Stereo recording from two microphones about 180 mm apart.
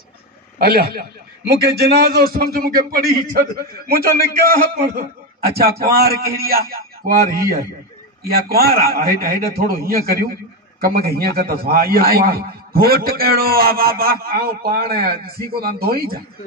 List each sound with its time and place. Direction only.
1.8 s a man's voice: 60° right (ahead or behind)